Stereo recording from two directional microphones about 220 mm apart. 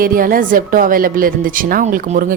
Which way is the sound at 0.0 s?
40° right (ahead or behind).